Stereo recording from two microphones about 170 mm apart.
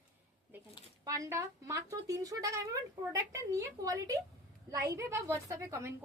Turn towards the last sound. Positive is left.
turn(degrees=-15)  # may be behind; listen again after turning